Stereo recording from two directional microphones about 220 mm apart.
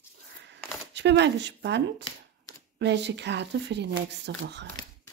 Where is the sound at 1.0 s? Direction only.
50° right (ahead or behind).